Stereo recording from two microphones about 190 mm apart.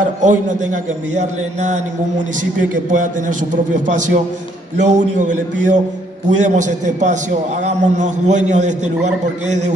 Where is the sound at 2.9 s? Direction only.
45° right (ahead or behind).